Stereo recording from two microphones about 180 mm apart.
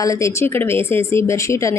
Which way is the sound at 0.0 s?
15° left (ahead or behind).